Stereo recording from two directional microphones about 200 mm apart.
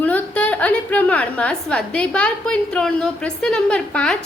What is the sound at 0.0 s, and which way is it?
A woman's voice, 10° left (ahead or behind).